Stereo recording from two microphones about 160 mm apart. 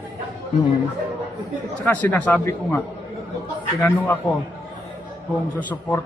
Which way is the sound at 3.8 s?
10° left (ahead or behind).